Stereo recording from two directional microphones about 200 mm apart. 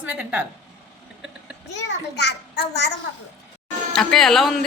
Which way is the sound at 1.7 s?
60° left (ahead or behind).